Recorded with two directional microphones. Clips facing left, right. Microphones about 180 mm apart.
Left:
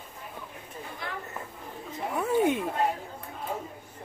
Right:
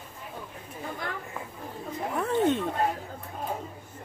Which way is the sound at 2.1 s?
5° left (ahead or behind).